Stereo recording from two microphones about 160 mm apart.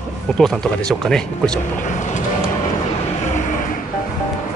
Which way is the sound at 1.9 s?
50° left (ahead or behind).